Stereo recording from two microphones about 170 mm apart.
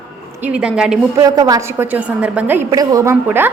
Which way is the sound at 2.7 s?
20° right (ahead or behind).